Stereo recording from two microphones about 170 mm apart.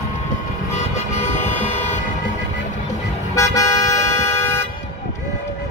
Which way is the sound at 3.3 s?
20° left (ahead or behind).